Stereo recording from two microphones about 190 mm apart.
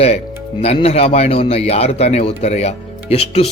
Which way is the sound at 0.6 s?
35° left (ahead or behind).